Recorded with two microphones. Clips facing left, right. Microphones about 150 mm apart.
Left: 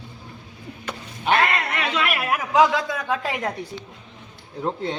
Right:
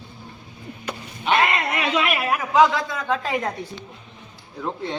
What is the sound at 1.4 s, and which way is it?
A man's voice, 5° right (ahead or behind).